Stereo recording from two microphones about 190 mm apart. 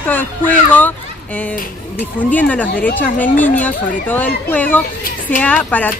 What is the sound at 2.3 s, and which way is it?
Speech, 10° left (ahead or behind).